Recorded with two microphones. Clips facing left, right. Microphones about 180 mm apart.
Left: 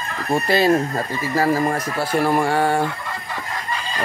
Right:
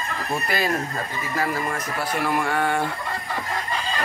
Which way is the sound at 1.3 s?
35° left (ahead or behind).